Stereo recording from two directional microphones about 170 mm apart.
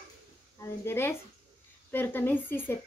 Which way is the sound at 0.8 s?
15° left (ahead or behind).